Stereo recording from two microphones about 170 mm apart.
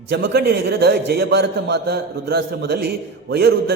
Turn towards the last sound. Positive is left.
turn(degrees=-70)  # may be behind; listen again after turning